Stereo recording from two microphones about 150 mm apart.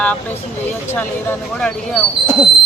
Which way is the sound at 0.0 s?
10° left (ahead or behind).